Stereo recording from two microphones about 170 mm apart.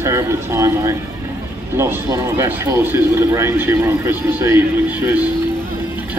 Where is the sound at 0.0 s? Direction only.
15° right (ahead or behind).